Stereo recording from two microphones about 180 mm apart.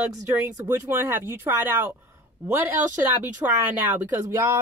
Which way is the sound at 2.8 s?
45° right (ahead or behind).